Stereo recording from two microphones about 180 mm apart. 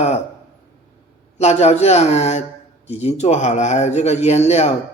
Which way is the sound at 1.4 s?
40° left (ahead or behind).